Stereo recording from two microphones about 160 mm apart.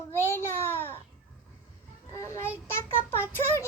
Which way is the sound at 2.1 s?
20° left (ahead or behind).